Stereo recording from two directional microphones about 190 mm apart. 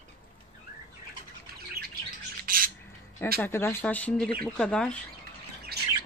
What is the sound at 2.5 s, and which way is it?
Bird, 50° right (ahead or behind).